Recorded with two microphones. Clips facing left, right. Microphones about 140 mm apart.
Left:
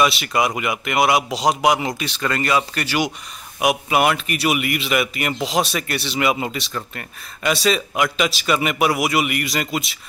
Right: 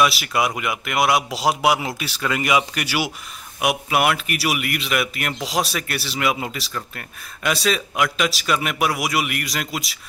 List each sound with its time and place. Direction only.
0.0 s a man's voice: centre (ahead or behind)